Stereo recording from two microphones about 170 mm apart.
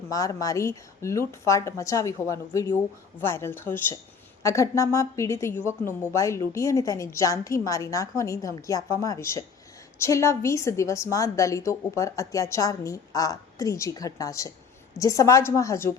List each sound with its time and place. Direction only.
0.1 s a woman's voice: 20° left (ahead or behind)